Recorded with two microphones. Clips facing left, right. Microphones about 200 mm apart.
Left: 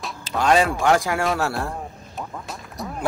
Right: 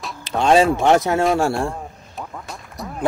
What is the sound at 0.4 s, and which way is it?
Speech, 25° right (ahead or behind).